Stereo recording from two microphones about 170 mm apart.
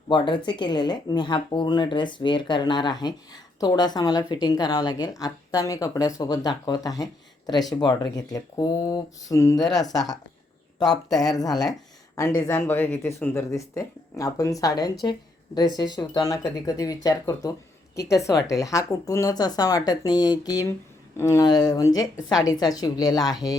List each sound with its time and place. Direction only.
0.1 s speech: 25° left (ahead or behind)
9.6 s speech: centre (ahead or behind)
10.8 s speech: 25° left (ahead or behind)